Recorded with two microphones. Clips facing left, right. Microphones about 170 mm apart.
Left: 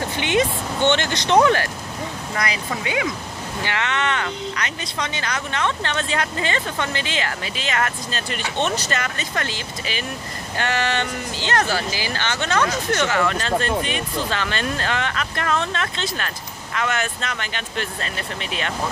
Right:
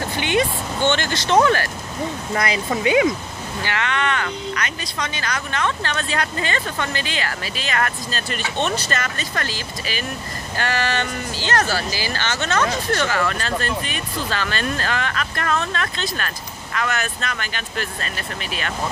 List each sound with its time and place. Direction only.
0.2 s speech: 20° left (ahead or behind)
2.3 s speech: 25° right (ahead or behind)
3.6 s speech: 20° left (ahead or behind)